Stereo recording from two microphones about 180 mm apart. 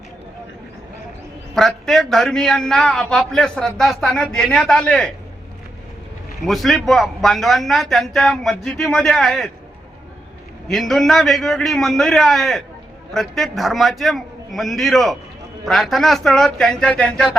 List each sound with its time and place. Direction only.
1.5 s a man's voice: centre (ahead or behind)
6.4 s a man's voice: centre (ahead or behind)
10.7 s a man's voice: centre (ahead or behind)